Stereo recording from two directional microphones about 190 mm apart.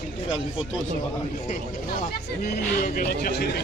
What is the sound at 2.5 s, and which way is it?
Speech, 50° left (ahead or behind).